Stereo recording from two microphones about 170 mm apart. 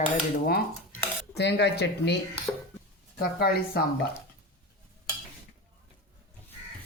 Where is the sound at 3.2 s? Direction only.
65° left (ahead or behind).